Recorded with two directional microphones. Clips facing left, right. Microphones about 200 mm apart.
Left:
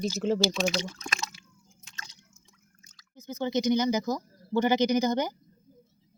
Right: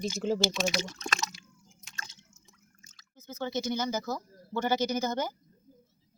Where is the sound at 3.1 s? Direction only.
15° left (ahead or behind).